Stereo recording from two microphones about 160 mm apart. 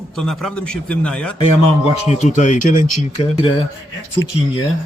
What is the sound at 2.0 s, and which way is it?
Speech, 45° left (ahead or behind).